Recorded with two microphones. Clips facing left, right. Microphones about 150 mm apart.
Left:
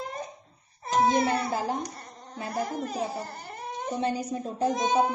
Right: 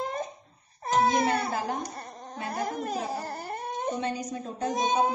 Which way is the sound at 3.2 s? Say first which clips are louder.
Right 2 dB; 40° right (ahead or behind).